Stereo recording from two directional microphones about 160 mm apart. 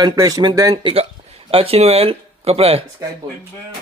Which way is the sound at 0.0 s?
25° right (ahead or behind).